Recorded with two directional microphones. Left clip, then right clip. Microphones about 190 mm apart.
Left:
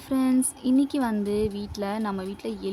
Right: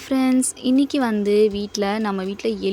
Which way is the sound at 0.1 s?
20° right (ahead or behind).